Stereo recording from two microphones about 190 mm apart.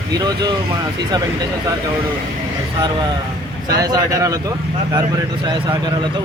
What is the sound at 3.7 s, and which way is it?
Speech, 20° right (ahead or behind).